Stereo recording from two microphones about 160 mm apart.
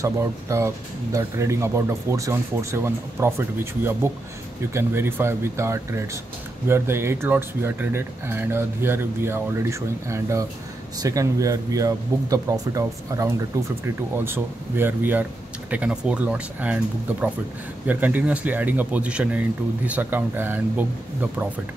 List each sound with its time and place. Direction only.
0.0 s speech: 20° right (ahead or behind)